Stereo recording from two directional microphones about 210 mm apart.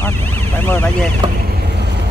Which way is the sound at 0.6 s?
10° left (ahead or behind).